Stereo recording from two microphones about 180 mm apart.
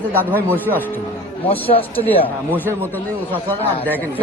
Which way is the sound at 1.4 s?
30° left (ahead or behind).